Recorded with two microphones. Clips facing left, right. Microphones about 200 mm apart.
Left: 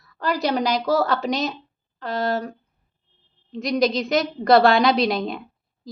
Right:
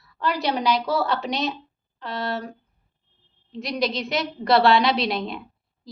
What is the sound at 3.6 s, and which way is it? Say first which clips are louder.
A woman's voice: left 5 dB; 45° left (ahead or behind).